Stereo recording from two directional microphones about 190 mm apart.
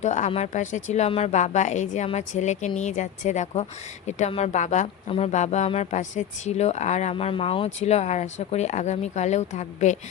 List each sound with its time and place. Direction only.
0.0 s a woman's voice: 40° left (ahead or behind)